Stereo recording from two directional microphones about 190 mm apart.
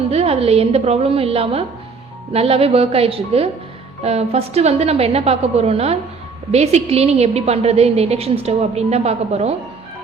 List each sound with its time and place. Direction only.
0.1 s a woman's voice: 30° right (ahead or behind)